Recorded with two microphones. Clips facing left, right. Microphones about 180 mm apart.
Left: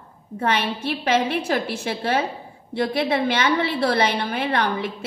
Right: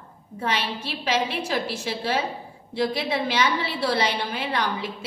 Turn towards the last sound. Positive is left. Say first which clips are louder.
# left 4 dB
turn(degrees=55)  # may be behind; listen again after turning